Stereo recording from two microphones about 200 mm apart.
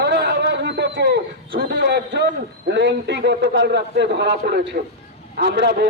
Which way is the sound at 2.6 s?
60° right (ahead or behind).